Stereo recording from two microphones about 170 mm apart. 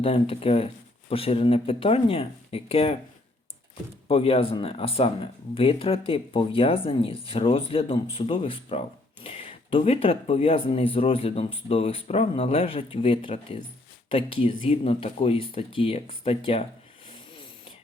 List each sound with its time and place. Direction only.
0.0 s speech: 35° left (ahead or behind)
4.1 s speech: 35° left (ahead or behind)
17.1 s snoring: 30° left (ahead or behind)